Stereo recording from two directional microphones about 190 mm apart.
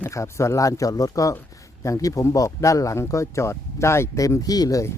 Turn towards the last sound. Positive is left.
turn(degrees=15)  # may be behind; listen again after turning